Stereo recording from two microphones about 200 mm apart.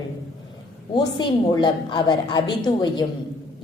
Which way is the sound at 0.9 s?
20° left (ahead or behind).